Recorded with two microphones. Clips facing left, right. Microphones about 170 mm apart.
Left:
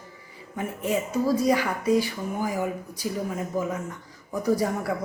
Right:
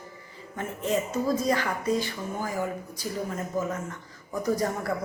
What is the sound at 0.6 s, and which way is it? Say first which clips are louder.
Speech: left 1 dB; 10° left (ahead or behind).